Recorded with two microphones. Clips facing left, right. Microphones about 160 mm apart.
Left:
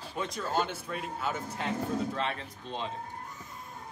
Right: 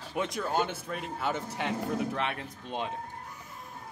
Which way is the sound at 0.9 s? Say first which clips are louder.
Right 1 dB; 65° right (ahead or behind).